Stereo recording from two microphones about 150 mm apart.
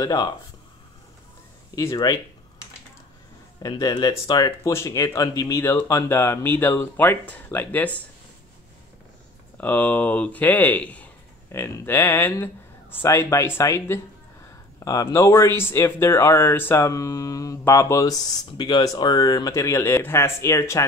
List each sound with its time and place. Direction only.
0.0 s speech: 25° left (ahead or behind)
1.8 s speech: 20° left (ahead or behind)
3.6 s speech: 25° left (ahead or behind); by 8.0 s 10° left (ahead or behind)
9.6 s speech: 10° left (ahead or behind)